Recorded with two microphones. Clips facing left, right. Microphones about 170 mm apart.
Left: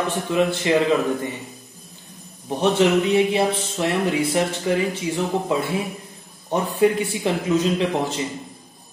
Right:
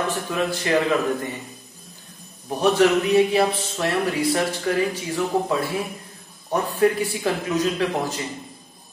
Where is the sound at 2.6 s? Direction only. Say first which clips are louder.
Even; 25° left (ahead or behind).